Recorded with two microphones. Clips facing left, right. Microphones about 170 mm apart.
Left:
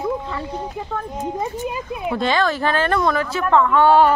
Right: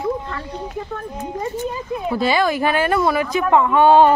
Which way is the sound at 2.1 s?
10° right (ahead or behind).